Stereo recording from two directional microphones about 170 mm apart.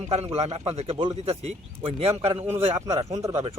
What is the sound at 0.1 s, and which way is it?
A man's voice, 35° right (ahead or behind).